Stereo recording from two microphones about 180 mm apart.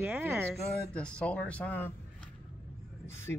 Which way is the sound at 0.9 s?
5° left (ahead or behind).